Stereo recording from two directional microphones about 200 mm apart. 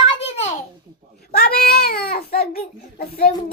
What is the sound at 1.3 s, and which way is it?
Baby cry, 50° left (ahead or behind).